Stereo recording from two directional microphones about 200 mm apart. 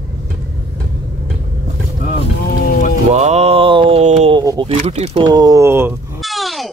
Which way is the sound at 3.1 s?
35° right (ahead or behind).